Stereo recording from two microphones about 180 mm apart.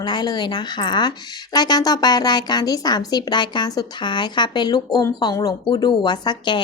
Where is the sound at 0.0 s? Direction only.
25° left (ahead or behind).